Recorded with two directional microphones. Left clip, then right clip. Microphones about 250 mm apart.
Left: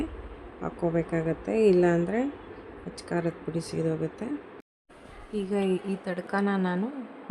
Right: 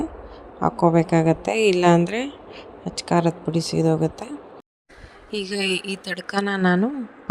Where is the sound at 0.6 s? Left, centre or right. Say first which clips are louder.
Right 11 dB; right.